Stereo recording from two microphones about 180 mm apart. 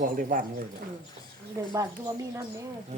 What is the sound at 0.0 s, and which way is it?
Speech, 50° right (ahead or behind).